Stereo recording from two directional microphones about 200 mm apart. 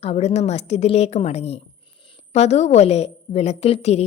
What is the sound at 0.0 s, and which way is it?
A woman's voice, 30° left (ahead or behind).